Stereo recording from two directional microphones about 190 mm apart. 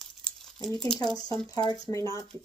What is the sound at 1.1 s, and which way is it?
Speech, 20° left (ahead or behind).